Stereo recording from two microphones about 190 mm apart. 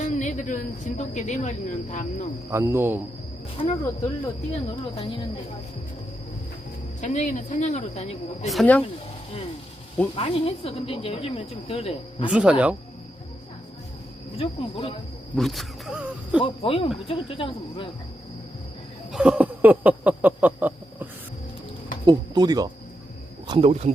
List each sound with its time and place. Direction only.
0.0 s a woman's voice: 40° left (ahead or behind)
2.5 s speech: 15° right (ahead or behind)
4.5 s speech: 30° left (ahead or behind)
7.0 s speech: 40° left (ahead or behind)
8.4 s speech: 5° left (ahead or behind)
10.2 s speech: 30° left (ahead or behind)
12.2 s speech: 5° right (ahead or behind)
14.3 s speech: 30° left (ahead or behind)
15.4 s wild animals: centre (ahead or behind)
16.4 s speech: 30° left (ahead or behind)
19.1 s a sound: 5° right (ahead or behind)
22.0 s speech: 20° right (ahead or behind)
23.5 s speech: 30° right (ahead or behind)